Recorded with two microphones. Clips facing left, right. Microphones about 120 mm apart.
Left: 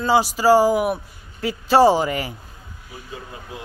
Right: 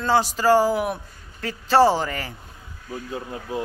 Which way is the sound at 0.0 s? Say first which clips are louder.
Left 2 dB; 10° left (ahead or behind).